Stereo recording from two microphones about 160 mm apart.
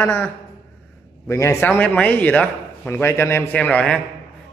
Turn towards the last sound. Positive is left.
turn(degrees=5)  # may be behind; listen again after turning